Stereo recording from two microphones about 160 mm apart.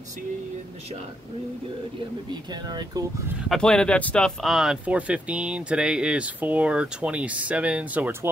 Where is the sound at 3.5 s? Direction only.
5° left (ahead or behind).